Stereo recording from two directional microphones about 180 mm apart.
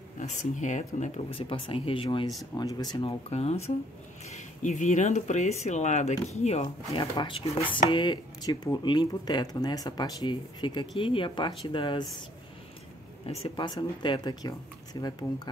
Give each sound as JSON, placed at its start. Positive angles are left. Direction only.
{"t": 0.2, "sound": "speech", "side_deg": 40}
{"t": 13.3, "sound": "speech", "side_deg": 30}